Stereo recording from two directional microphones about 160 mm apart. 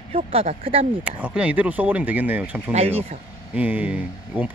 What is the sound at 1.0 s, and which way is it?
Speech, 10° right (ahead or behind).